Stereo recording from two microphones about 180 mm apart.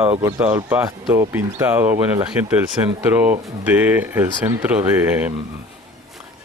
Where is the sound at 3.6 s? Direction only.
10° right (ahead or behind).